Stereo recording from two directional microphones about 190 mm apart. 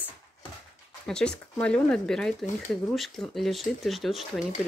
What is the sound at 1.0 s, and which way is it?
Speech, 5° left (ahead or behind).